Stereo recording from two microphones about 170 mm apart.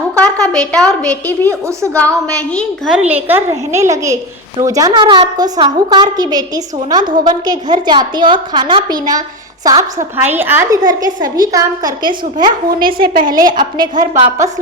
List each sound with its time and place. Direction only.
0.2 s a woman's voice: 5° left (ahead or behind)
1.5 s a child's voice: 15° right (ahead or behind)
2.6 s a child's voice: 5° right (ahead or behind); by 12.1 s 20° right (ahead or behind)
12.8 s a woman's voice: 60° right (ahead or behind)
13.2 s a woman's voice: 20° right (ahead or behind)